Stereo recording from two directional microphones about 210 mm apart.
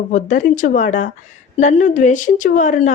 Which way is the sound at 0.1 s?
35° left (ahead or behind).